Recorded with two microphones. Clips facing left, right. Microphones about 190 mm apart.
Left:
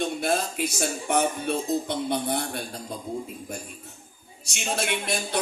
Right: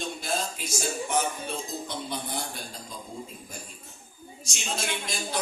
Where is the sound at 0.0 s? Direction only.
60° left (ahead or behind).